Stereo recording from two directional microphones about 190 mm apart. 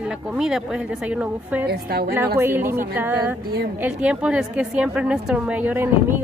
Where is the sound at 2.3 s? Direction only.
10° right (ahead or behind).